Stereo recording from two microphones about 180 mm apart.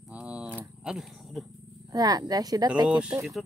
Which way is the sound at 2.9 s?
5° right (ahead or behind).